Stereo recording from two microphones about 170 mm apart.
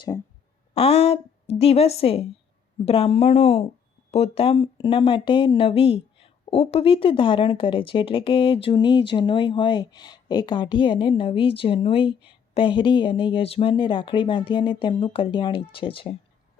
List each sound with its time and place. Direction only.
0.7 s a woman's voice: 35° left (ahead or behind)